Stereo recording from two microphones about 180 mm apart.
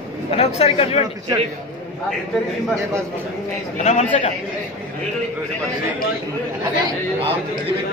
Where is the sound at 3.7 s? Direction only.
40° left (ahead or behind).